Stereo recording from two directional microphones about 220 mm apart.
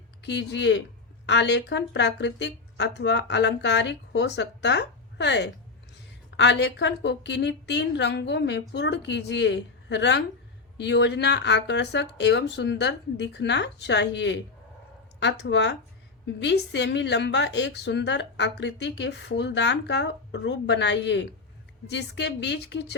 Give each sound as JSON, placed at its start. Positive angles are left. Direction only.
{"t": 0.2, "sound": "speech", "side_deg": 50}